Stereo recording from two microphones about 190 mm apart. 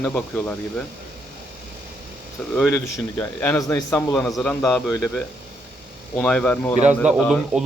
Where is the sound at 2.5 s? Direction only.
10° left (ahead or behind).